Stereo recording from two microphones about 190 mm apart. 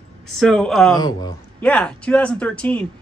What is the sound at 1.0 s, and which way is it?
Speech, 20° left (ahead or behind).